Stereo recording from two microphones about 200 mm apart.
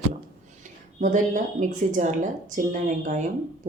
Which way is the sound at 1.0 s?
40° right (ahead or behind).